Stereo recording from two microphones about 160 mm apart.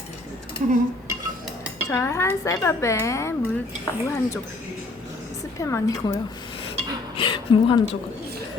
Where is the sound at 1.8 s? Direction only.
15° left (ahead or behind).